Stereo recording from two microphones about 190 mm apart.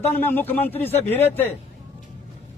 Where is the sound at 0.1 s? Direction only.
10° left (ahead or behind).